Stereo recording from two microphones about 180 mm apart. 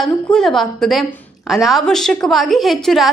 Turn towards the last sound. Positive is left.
turn(degrees=0)  # may be behind; listen again after turning